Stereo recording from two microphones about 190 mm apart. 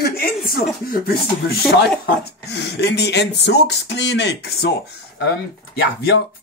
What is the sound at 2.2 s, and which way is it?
Speech, 60° left (ahead or behind).